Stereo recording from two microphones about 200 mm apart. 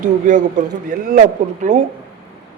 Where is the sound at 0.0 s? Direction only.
40° right (ahead or behind).